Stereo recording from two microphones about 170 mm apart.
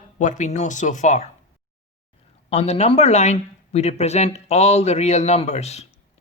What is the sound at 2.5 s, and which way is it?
Speech, 40° left (ahead or behind).